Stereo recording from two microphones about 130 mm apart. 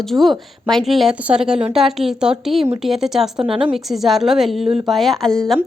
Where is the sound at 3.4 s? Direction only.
45° right (ahead or behind).